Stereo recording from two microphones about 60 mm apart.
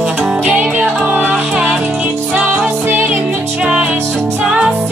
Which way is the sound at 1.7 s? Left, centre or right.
Centre.